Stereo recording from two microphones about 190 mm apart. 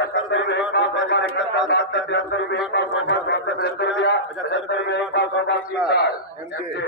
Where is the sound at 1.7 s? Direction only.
70° left (ahead or behind).